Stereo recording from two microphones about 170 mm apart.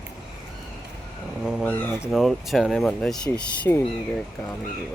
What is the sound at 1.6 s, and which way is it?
Speech, 10° left (ahead or behind).